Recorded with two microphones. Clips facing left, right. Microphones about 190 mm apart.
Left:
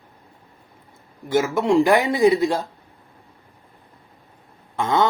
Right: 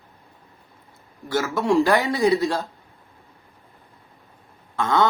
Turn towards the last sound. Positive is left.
turn(degrees=20)  # may be behind; listen again after turning